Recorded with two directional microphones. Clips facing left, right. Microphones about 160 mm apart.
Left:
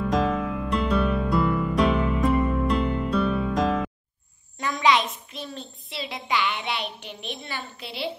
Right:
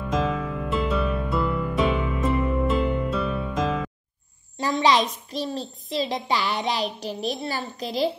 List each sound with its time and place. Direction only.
0.1 s music: centre (ahead or behind)
4.6 s a child's voice: 30° right (ahead or behind)